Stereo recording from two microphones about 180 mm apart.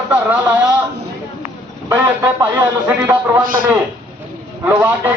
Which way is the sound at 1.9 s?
10° right (ahead or behind).